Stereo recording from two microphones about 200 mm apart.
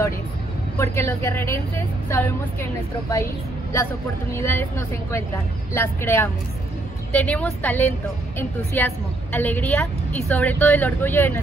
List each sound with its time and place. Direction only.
0.7 s a woman's voice: 15° left (ahead or behind)
4.3 s a woman's voice: 10° left (ahead or behind)